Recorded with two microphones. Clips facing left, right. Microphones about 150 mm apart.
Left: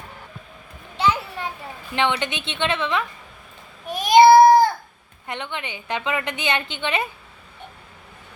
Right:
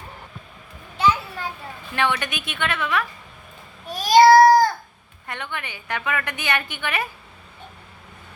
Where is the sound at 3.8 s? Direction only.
20° left (ahead or behind).